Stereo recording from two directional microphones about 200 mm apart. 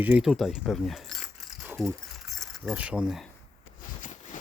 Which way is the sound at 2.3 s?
Centre (ahead or behind).